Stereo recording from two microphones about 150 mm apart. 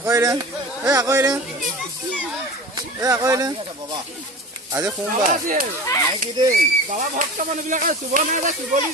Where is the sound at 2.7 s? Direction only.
25° right (ahead or behind).